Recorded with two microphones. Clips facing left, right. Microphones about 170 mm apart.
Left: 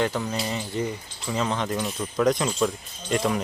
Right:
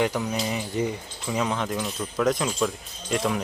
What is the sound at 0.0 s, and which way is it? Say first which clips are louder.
Speech: right 1 dB; 10° right (ahead or behind).